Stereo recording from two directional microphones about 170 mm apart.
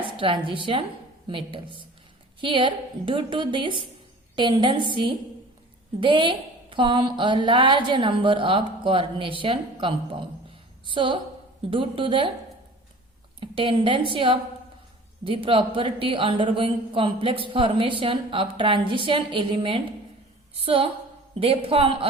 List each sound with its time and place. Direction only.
0.2 s a woman's voice: 30° right (ahead or behind)
13.4 s a man's voice: 30° right (ahead or behind)